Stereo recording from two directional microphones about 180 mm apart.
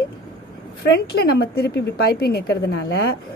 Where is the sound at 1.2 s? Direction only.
60° left (ahead or behind).